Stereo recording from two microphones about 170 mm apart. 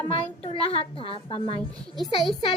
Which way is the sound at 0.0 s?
35° left (ahead or behind).